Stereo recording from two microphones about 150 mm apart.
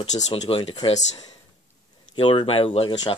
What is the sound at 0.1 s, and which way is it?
Speech, 45° left (ahead or behind).